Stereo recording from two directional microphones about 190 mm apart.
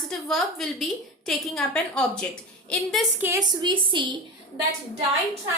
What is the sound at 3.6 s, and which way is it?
Speech, 25° right (ahead or behind).